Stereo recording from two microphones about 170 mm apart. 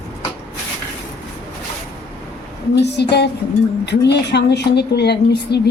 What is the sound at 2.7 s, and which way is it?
A woman's voice, 85° left.